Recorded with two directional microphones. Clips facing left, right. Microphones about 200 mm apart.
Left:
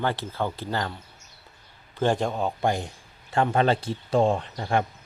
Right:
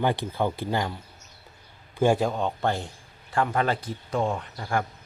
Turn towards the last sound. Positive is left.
turn(degrees=20)  # may be behind; listen again after turning